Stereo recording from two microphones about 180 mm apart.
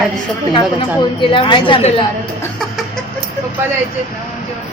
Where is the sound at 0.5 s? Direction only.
25° left (ahead or behind).